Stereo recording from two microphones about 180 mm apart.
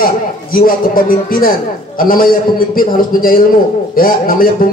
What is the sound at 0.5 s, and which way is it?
A man's voice, 50° left (ahead or behind).